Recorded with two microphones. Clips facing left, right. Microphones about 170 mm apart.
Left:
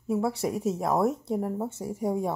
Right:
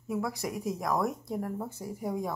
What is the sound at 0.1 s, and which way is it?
Speech, 30° left (ahead or behind).